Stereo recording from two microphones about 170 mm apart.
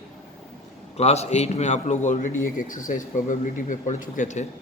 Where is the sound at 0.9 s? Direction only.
40° left (ahead or behind).